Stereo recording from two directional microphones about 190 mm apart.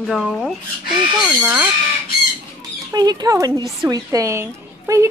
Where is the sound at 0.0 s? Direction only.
Centre (ahead or behind).